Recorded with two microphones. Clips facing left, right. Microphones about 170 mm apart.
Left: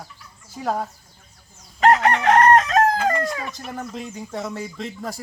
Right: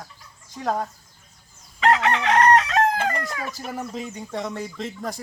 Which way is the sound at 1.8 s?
45° left (ahead or behind).